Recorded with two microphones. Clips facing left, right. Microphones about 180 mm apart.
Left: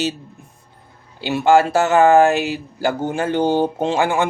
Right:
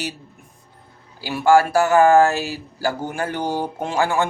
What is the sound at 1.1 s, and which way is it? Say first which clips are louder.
Speech: left 1 dB; 25° left (ahead or behind).